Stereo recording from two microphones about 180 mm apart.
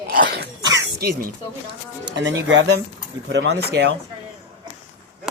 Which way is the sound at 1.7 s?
85° right.